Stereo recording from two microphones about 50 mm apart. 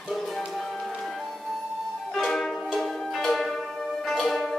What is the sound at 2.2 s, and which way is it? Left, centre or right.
Music, centre.